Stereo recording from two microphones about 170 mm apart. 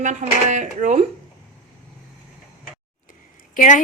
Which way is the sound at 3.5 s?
45° left (ahead or behind).